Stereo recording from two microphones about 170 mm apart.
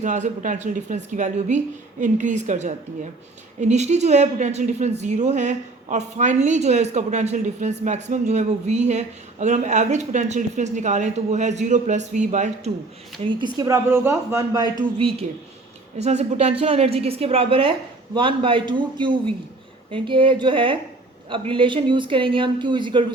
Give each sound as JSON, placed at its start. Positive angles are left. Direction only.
{"t": 0.0, "sound": "a woman's voice", "side_deg": -45}
{"t": 13.4, "sound": "speech", "side_deg": -20}
{"t": 16.0, "sound": "a woman's voice", "side_deg": -40}